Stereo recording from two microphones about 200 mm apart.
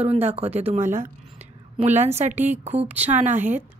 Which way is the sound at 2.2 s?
35° right (ahead or behind).